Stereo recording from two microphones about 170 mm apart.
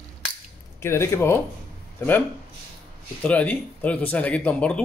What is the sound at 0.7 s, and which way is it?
A man's voice, 15° left (ahead or behind).